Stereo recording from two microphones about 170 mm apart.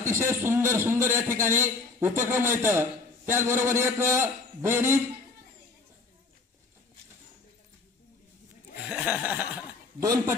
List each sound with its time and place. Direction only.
0.1 s a man's voice: 15° right (ahead or behind)
8.8 s chuckle: 5° right (ahead or behind)
10.0 s a man's voice: 20° right (ahead or behind)